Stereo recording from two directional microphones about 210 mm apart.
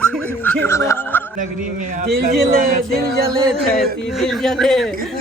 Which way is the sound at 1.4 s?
40° right (ahead or behind).